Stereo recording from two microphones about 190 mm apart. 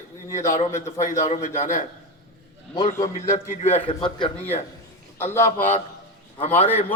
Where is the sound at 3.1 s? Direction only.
40° left (ahead or behind).